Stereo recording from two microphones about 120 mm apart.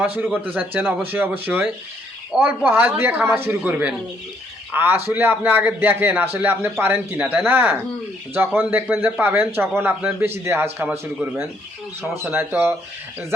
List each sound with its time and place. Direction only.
0.4 s a man's voice: 15° right (ahead or behind)